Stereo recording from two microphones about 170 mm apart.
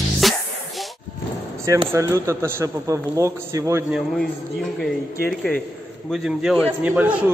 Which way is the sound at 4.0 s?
Centre (ahead or behind).